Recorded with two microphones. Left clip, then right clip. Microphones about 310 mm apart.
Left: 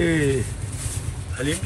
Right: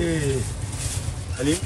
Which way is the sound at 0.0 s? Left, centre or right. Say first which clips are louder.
Left 4 dB; centre.